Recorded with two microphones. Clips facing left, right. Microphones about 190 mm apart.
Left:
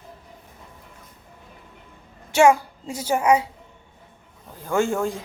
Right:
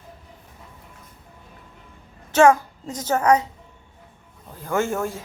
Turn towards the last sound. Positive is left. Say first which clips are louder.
# left 1 dB
turn(degrees=15)  # may be behind; listen again after turning